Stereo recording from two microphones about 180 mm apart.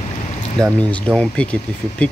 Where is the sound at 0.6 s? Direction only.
5° left (ahead or behind).